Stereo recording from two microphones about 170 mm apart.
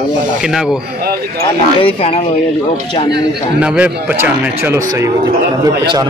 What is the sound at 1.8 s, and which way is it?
Speech, 35° left (ahead or behind).